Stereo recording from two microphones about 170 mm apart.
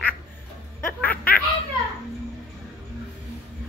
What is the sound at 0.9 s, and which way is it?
Snicker, 10° left (ahead or behind).